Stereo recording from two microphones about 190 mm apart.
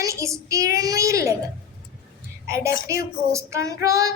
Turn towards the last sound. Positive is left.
turn(degrees=-15)  # may be behind; listen again after turning